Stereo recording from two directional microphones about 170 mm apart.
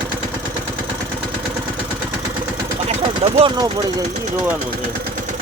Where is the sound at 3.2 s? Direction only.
40° right (ahead or behind).